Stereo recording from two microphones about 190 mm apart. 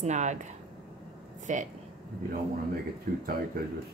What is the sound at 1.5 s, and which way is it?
Speech, 40° right (ahead or behind).